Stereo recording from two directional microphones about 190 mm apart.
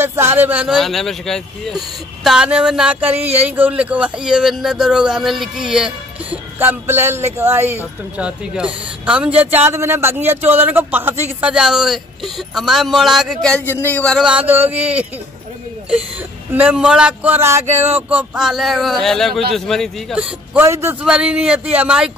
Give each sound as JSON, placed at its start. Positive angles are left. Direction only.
{"t": 0.0, "sound": "speech", "side_deg": -10}
{"t": 3.2, "sound": "speech", "side_deg": -30}
{"t": 3.4, "sound": "speech", "side_deg": -10}